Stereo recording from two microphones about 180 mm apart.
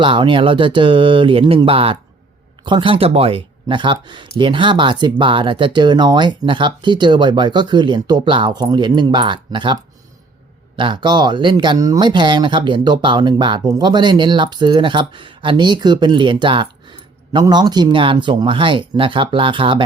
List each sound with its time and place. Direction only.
0.0 s speech: 25° right (ahead or behind)
10.8 s speech: 25° right (ahead or behind)